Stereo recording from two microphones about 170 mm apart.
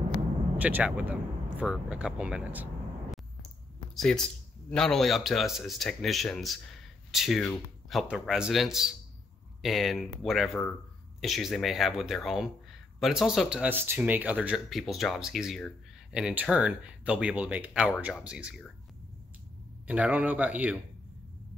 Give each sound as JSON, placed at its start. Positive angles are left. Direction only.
{"t": 0.6, "sound": "speech", "side_deg": -10}
{"t": 19.9, "sound": "speech", "side_deg": -10}